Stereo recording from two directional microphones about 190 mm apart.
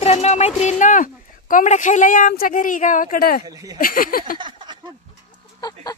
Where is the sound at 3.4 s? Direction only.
20° right (ahead or behind).